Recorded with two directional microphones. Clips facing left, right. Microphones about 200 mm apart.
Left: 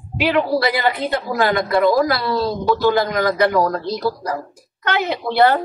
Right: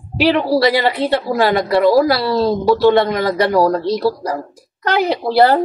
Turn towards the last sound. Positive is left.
turn(degrees=-35)  # may be behind; listen again after turning